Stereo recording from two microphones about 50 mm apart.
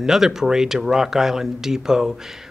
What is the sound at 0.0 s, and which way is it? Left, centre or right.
A man's voice, centre.